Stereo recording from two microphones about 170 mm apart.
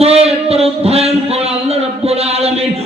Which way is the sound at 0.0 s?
35° right (ahead or behind).